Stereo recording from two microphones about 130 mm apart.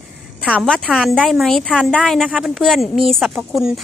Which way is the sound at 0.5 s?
5° left (ahead or behind).